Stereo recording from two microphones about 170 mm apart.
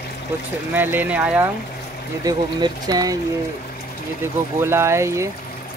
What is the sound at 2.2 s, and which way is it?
Speech, 20° right (ahead or behind).